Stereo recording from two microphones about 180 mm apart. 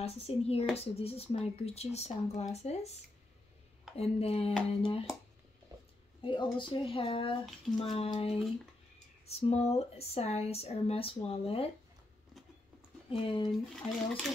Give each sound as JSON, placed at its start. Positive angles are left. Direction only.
{"t": 0.0, "sound": "speech", "side_deg": 35}
{"t": 5.7, "sound": "a sound", "side_deg": -20}
{"t": 6.2, "sound": "speech", "side_deg": 25}
{"t": 13.1, "sound": "speech", "side_deg": 30}
{"t": 13.8, "sound": "speech", "side_deg": 0}